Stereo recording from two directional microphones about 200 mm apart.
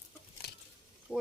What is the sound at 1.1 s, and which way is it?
Speech, centre (ahead or behind).